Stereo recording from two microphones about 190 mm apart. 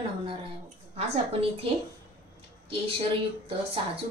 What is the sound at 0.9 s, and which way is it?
Speech, 35° right (ahead or behind).